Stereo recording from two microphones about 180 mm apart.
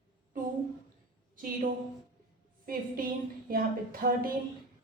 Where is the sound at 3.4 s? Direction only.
55° right (ahead or behind).